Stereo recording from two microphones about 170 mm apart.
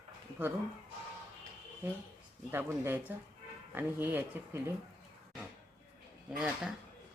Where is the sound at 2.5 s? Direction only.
15° right (ahead or behind).